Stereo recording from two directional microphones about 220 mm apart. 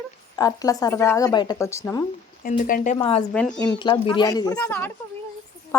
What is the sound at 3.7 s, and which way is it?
Speech, 20° left (ahead or behind).